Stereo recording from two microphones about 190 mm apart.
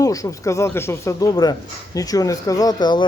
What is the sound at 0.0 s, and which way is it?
Speech, 15° left (ahead or behind).